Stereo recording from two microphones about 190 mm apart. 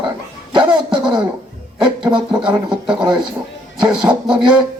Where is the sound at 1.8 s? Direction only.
25° right (ahead or behind).